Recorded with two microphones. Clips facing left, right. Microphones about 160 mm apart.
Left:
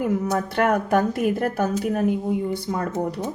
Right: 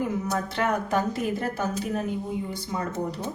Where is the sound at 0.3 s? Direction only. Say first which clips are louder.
Left 5 dB; 55° left (ahead or behind).